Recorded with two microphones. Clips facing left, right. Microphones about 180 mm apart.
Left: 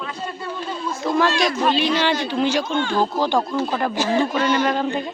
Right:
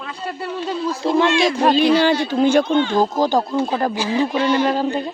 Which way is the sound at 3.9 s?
45° left (ahead or behind).